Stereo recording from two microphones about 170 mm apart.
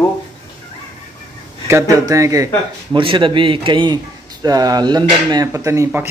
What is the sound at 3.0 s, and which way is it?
A man's voice, 30° right (ahead or behind).